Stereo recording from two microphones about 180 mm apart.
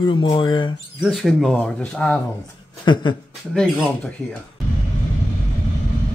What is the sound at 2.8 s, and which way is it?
Speech, 25° left (ahead or behind).